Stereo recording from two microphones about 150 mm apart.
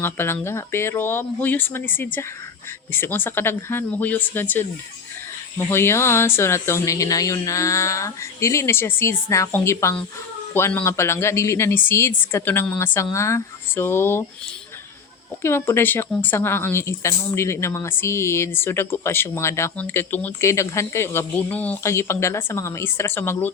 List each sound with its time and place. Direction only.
0.0 s speech: 15° left (ahead or behind)
15.4 s speech: 15° left (ahead or behind)